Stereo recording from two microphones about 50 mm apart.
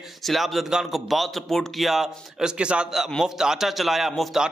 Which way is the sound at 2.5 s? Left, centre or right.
Right.